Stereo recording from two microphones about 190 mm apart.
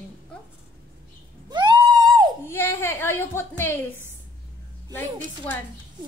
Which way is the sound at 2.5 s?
15° left (ahead or behind).